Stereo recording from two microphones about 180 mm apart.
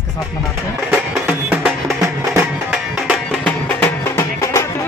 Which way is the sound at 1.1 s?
5° right (ahead or behind).